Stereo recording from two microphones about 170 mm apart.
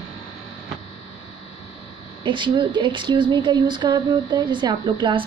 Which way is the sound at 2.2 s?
30° right (ahead or behind).